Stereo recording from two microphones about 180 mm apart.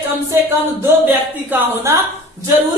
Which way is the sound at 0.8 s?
10° right (ahead or behind).